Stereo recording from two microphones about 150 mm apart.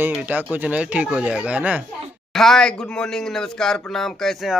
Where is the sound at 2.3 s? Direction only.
5° left (ahead or behind).